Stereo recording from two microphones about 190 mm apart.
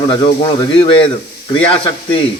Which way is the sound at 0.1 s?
25° left (ahead or behind).